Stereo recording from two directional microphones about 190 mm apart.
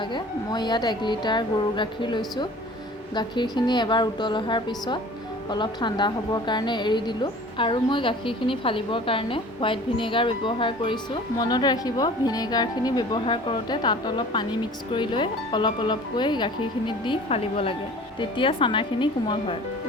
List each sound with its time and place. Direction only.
0.0 s a woman's voice: 25° left (ahead or behind)